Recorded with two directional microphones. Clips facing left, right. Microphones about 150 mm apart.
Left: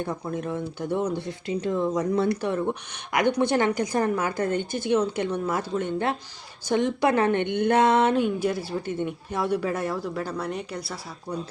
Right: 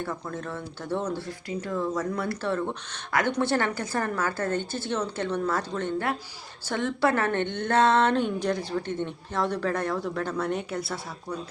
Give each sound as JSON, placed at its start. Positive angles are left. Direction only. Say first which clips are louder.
{"t": 0.0, "sound": "a woman's voice", "louder": "left 4 dB", "side_deg": 15}